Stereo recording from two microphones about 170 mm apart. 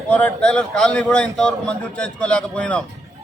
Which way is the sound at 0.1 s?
5° left (ahead or behind).